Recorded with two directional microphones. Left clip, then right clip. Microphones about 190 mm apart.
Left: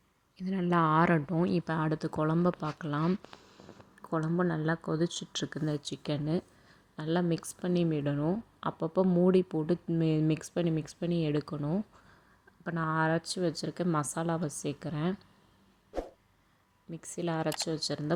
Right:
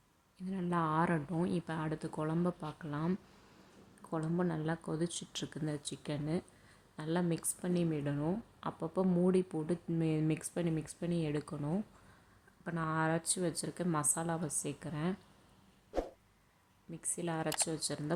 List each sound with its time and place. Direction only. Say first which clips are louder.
0.4 s speech: left 7 dB; 30° left (ahead or behind)
15.9 s a sound: even; centre (ahead or behind)
16.9 s speech: left 5 dB; 20° left (ahead or behind)